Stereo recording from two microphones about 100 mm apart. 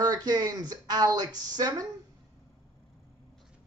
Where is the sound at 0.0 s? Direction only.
40° right (ahead or behind).